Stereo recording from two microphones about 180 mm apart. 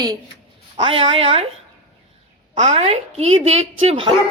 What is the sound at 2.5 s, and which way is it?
A man's voice, 40° right (ahead or behind).